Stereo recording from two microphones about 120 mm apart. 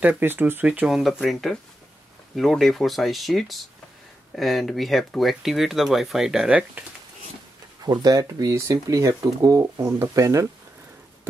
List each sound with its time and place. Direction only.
0.0 s speech: 15° right (ahead or behind)
7.8 s speech: 30° right (ahead or behind)